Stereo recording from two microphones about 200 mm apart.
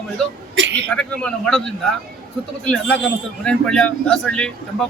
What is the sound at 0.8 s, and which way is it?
Speech, 5° left (ahead or behind).